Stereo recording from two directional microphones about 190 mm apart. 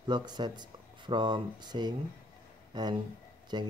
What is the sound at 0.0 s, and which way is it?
Speech, 25° right (ahead or behind).